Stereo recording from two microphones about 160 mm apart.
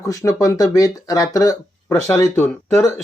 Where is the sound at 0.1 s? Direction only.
20° left (ahead or behind).